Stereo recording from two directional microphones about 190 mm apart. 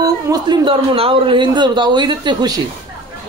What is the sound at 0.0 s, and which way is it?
A man's voice, 20° right (ahead or behind).